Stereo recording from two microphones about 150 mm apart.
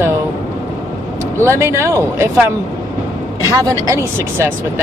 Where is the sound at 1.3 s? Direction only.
15° right (ahead or behind).